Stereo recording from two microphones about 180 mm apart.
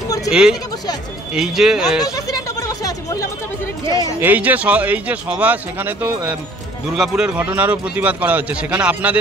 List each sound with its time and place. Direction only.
0.3 s speech: 5° right (ahead or behind)
2.0 s chatter: 20° left (ahead or behind)
4.2 s a man's voice: 10° right (ahead or behind)